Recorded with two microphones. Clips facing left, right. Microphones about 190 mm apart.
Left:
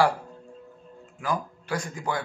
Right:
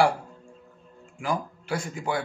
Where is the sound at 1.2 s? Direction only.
10° right (ahead or behind).